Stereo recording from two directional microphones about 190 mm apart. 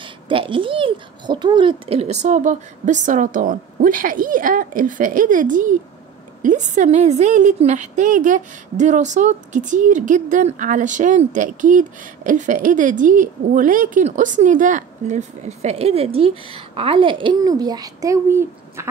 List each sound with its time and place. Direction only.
0.0 s a woman's voice: 25° right (ahead or behind)